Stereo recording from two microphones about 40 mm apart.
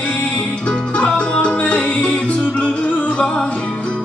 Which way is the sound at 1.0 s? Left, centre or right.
Left.